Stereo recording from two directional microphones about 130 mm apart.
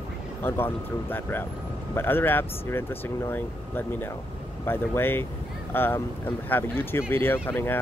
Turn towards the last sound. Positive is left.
turn(degrees=15)  # may be behind; listen again after turning